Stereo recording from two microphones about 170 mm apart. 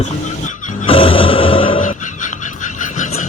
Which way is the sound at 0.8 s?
35° left (ahead or behind).